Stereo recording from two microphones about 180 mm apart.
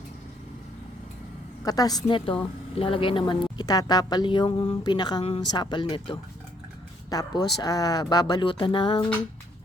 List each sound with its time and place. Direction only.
1.6 s a woman's voice: 20° left (ahead or behind)